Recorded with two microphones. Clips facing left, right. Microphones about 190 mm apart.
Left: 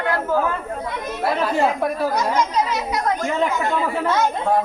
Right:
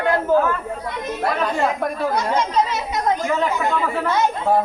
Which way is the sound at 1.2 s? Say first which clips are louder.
Left 2 dB; 5° left (ahead or behind).